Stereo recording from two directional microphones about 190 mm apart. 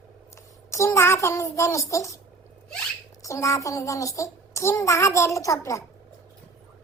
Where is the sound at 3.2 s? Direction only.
15° left (ahead or behind).